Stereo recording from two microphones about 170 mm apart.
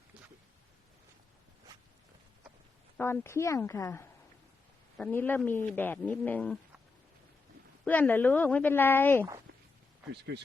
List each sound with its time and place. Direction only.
3.0 s speech: 15° left (ahead or behind)
7.9 s speech: 10° left (ahead or behind)
10.1 s speech: 85° right